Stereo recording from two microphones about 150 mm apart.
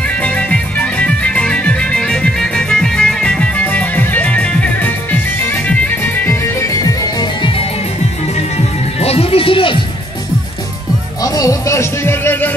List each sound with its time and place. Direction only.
0.2 s music: 10° left (ahead or behind)
7.2 s music: 35° left (ahead or behind)
11.2 s music: 25° left (ahead or behind)